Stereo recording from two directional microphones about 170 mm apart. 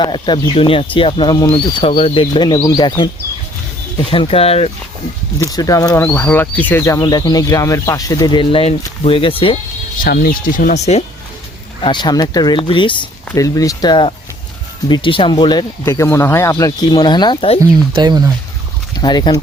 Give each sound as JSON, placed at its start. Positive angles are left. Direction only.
{"t": 0.0, "sound": "speech", "side_deg": 25}
{"t": 3.9, "sound": "speech", "side_deg": 30}
{"t": 5.4, "sound": "speech", "side_deg": 20}
{"t": 10.0, "sound": "speech", "side_deg": 60}
{"t": 11.8, "sound": "speech", "side_deg": 25}
{"t": 17.6, "sound": "speech", "side_deg": -25}
{"t": 18.9, "sound": "speech", "side_deg": 25}